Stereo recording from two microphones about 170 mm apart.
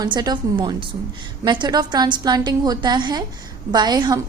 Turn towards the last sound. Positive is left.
turn(degrees=-25)  # may be behind; listen again after turning